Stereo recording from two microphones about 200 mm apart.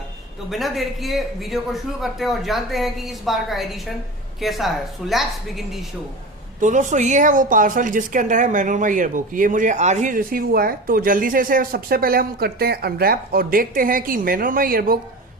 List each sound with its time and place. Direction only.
0.5 s a man's voice: centre (ahead or behind)
6.6 s a woman's voice: 40° right (ahead or behind)